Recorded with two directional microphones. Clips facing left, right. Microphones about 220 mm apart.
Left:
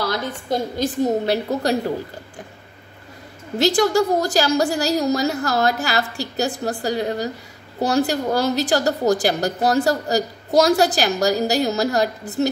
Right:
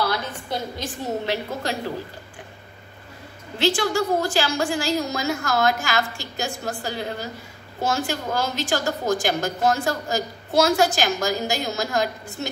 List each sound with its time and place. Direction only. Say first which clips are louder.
0.0 s a woman's voice: left 2 dB; 45° left (ahead or behind)
3.5 s a woman's voice: left 5 dB; 40° left (ahead or behind)